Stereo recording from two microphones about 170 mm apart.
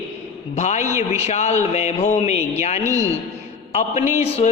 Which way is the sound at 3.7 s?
40° left (ahead or behind).